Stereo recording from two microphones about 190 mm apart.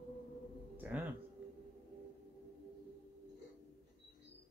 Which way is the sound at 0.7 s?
10° right (ahead or behind).